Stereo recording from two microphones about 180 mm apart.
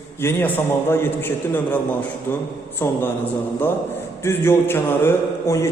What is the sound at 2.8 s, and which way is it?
Speech, 15° left (ahead or behind).